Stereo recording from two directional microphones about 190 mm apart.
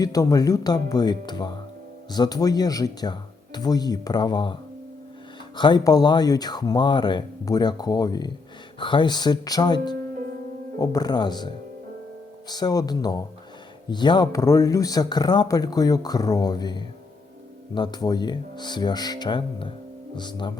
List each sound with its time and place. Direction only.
0.0 s speech: 20° left (ahead or behind)
5.5 s speech: 25° left (ahead or behind)